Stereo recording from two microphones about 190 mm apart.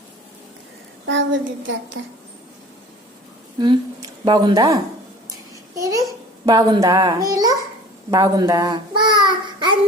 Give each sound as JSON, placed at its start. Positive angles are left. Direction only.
{"t": 1.0, "sound": "a woman's voice", "side_deg": -75}
{"t": 3.6, "sound": "a child's voice", "side_deg": -20}
{"t": 8.1, "sound": "child singing", "side_deg": -20}